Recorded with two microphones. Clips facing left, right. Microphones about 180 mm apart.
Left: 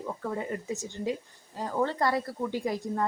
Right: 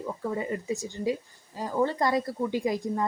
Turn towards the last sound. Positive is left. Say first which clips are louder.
# right 3 dB
turn(degrees=-10)  # may be behind; listen again after turning